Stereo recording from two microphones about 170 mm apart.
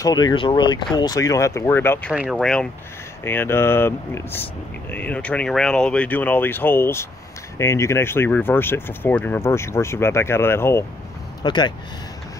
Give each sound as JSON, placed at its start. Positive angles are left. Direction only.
{"t": 0.0, "sound": "speech", "side_deg": 25}
{"t": 11.4, "sound": "speech", "side_deg": 25}